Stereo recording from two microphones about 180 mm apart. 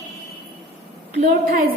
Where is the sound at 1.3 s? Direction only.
50° right (ahead or behind).